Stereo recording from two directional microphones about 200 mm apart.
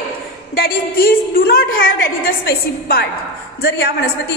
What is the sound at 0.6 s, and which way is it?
A woman's voice, 45° left (ahead or behind).